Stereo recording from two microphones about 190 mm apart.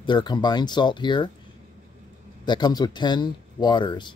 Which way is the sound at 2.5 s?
20° left (ahead or behind).